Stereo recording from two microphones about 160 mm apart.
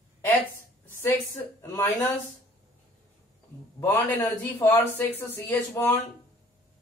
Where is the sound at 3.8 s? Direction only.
15° left (ahead or behind).